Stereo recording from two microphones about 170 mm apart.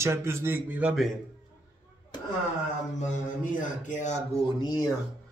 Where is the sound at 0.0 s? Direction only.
15° right (ahead or behind).